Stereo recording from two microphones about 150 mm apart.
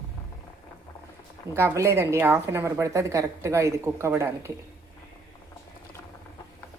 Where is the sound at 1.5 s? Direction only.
15° right (ahead or behind).